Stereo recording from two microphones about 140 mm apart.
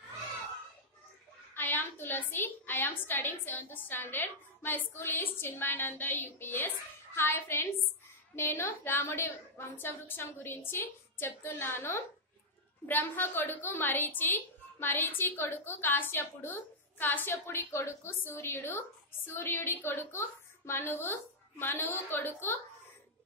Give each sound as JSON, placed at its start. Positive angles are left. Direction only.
{"t": 1.5, "sound": "a woman's voice", "side_deg": 15}